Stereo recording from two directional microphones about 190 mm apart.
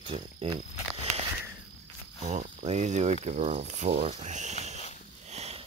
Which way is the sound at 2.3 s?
40° right (ahead or behind).